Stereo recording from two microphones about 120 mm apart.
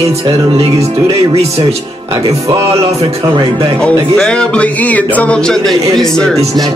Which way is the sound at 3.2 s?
40° right (ahead or behind).